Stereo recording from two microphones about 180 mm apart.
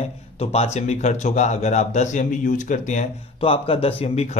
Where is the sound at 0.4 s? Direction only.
35° left (ahead or behind).